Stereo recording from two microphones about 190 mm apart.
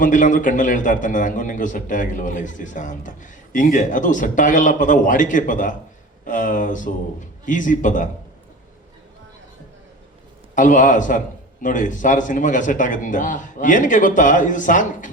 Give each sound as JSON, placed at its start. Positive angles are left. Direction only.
{"t": 0.0, "sound": "a man's voice", "side_deg": 45}
{"t": 10.5, "sound": "a man's voice", "side_deg": 40}